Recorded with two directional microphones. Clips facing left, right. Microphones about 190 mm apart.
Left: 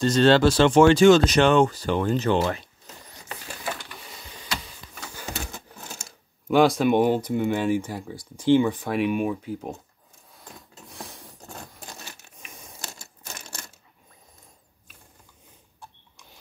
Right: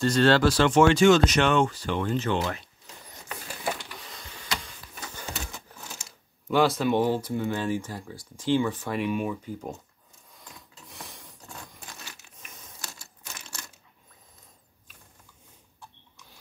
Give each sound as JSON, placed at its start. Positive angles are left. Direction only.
{"t": 0.0, "sound": "speech", "side_deg": 20}
{"t": 6.5, "sound": "speech", "side_deg": 15}